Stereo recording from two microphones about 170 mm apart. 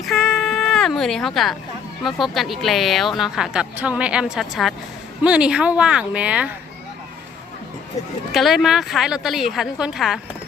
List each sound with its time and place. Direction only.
0.0 s a sound: centre (ahead or behind)
2.0 s a woman's voice: centre (ahead or behind)
8.3 s a woman's voice: centre (ahead or behind)